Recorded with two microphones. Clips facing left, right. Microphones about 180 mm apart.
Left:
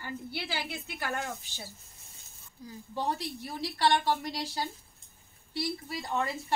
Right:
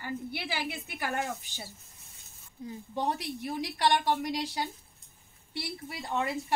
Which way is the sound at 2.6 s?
15° right (ahead or behind).